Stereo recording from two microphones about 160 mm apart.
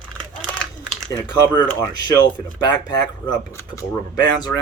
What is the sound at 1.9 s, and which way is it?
Speech, 30° left (ahead or behind).